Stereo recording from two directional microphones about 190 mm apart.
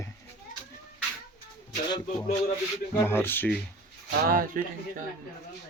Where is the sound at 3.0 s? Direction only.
10° left (ahead or behind).